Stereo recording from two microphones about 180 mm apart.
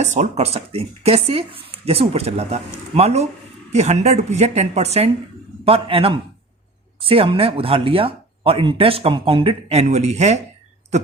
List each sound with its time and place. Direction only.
0.0 s speech: 40° right (ahead or behind)